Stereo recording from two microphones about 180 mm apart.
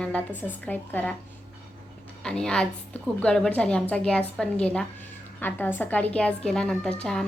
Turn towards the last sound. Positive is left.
turn(degrees=5)  # may be behind; listen again after turning